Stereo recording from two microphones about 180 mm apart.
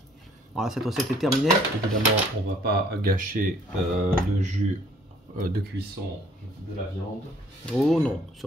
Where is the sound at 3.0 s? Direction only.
50° right (ahead or behind).